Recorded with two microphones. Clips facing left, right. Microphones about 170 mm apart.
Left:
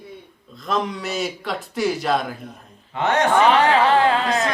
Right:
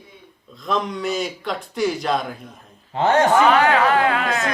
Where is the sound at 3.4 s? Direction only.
30° left (ahead or behind).